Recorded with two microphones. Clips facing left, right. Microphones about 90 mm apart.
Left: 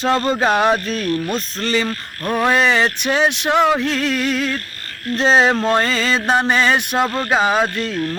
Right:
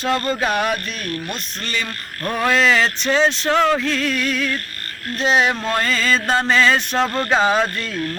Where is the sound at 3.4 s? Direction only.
15° left (ahead or behind).